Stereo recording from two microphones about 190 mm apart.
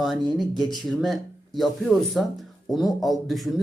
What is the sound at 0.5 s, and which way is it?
Speech, centre (ahead or behind).